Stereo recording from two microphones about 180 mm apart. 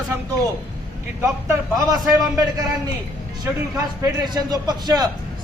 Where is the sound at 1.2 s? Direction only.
15° right (ahead or behind).